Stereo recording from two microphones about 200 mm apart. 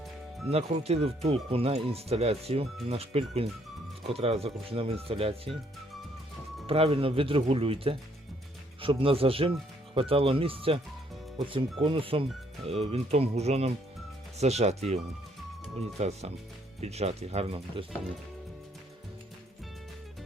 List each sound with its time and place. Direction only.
0.4 s speech: 30° right (ahead or behind)
6.7 s speech: 30° right (ahead or behind)